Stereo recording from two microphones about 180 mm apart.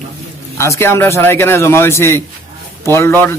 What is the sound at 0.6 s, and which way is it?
A man's voice, 15° left (ahead or behind).